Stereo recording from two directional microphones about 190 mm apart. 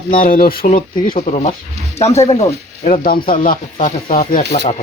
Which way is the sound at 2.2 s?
35° left (ahead or behind).